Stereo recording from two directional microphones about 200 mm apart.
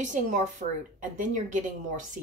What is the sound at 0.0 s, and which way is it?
A woman's voice, 40° right (ahead or behind).